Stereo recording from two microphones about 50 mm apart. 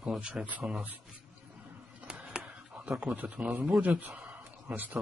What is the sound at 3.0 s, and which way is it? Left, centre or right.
Speech, right.